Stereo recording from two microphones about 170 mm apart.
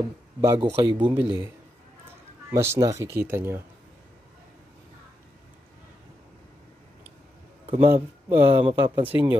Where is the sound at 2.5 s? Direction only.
15° right (ahead or behind).